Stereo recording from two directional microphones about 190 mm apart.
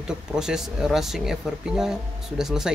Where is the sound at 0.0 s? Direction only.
5° right (ahead or behind).